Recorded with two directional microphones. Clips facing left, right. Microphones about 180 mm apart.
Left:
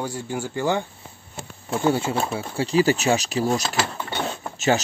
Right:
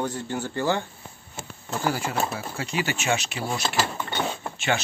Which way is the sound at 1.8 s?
25° left (ahead or behind).